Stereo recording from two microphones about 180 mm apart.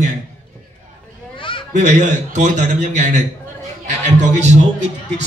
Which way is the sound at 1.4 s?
25° left (ahead or behind).